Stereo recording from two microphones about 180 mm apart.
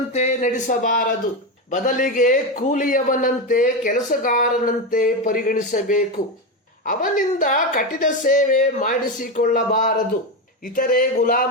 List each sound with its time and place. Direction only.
0.1 s a man's voice: 40° left (ahead or behind)